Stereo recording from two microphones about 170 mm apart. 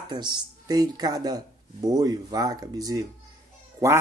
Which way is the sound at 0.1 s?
25° right (ahead or behind).